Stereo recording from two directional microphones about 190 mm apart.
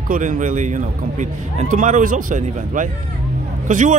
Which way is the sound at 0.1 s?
40° right (ahead or behind).